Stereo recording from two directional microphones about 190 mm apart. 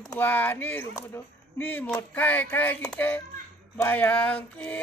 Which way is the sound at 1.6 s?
10° left (ahead or behind).